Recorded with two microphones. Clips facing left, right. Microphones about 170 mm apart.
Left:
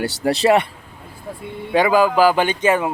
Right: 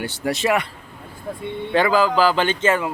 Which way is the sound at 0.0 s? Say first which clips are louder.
Left 5 dB; 35° left (ahead or behind).